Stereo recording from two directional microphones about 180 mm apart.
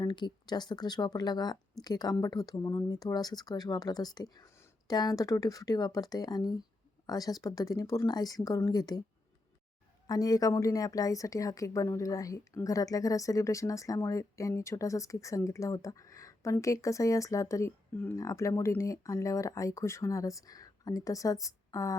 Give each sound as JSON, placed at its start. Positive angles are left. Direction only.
{"t": 0.0, "sound": "speech", "side_deg": 25}
{"t": 10.1, "sound": "a woman's voice", "side_deg": 20}